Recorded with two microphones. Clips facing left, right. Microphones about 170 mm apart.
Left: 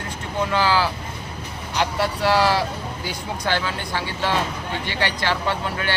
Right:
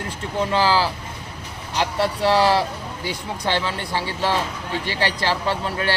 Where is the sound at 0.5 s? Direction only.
30° right (ahead or behind).